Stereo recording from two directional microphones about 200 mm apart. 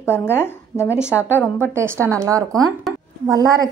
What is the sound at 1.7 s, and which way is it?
Speech, 15° right (ahead or behind).